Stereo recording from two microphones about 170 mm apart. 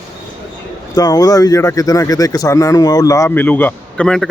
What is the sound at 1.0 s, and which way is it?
Speech, 20° left (ahead or behind).